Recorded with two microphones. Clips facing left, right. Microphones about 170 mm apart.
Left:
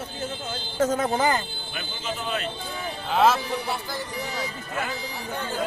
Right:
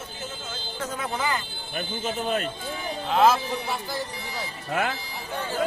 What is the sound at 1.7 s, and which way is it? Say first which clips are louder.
Speech: right 4 dB; 50° right (ahead or behind).